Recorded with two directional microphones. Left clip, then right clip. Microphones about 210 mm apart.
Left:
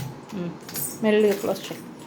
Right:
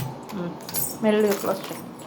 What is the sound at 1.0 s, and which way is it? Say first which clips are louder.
Speech: left 1 dB; 25° left (ahead or behind).